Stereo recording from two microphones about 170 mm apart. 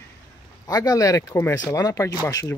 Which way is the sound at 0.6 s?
25° left (ahead or behind).